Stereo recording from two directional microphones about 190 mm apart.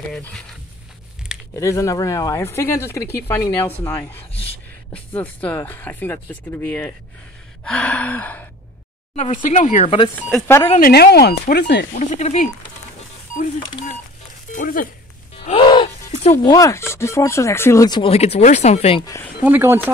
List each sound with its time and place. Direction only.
0.1 s speech: 5° left (ahead or behind)
1.5 s speech: 15° left (ahead or behind)
4.3 s a sound: 30° left (ahead or behind)
4.9 s speech: 10° left (ahead or behind)
9.1 s speech: 35° left (ahead or behind)
10.8 s speech: 55° left (ahead or behind)
11.9 s speech: 40° left (ahead or behind)
14.5 s speech: 45° left (ahead or behind)
15.4 s gasp: 25° left (ahead or behind)
16.4 s speech: 15° left (ahead or behind); by 19.0 s 30° left (ahead or behind)
19.4 s speech: 10° right (ahead or behind)